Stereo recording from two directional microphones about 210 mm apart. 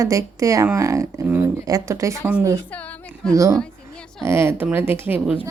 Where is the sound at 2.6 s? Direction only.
5° left (ahead or behind).